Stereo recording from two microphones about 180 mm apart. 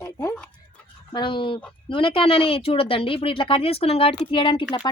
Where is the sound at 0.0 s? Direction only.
15° left (ahead or behind).